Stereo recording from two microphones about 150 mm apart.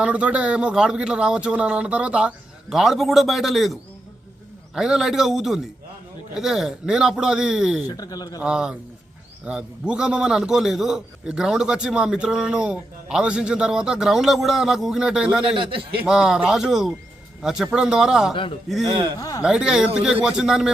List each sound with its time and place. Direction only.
0.0 s a man's voice: 10° right (ahead or behind)
7.9 s speech: 25° left (ahead or behind)
8.4 s a man's voice: 5° right (ahead or behind)
15.5 s a man's voice: 35° right (ahead or behind)
16.0 s a man's voice: 5° right (ahead or behind)